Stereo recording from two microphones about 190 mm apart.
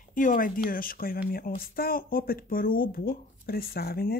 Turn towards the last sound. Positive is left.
turn(degrees=55)  # may be behind; listen again after turning